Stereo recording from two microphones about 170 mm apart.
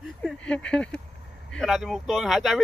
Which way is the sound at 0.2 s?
5° left (ahead or behind).